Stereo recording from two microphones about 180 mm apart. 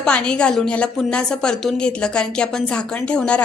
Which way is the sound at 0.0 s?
5° left (ahead or behind).